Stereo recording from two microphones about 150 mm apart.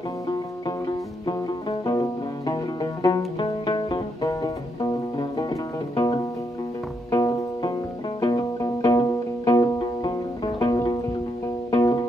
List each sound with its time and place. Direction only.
0.3 s music: 30° left (ahead or behind)